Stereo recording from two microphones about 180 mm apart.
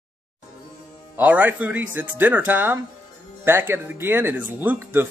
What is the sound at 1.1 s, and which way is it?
Speech, 10° right (ahead or behind).